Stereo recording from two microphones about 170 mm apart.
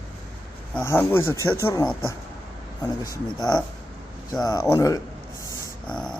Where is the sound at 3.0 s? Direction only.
20° left (ahead or behind).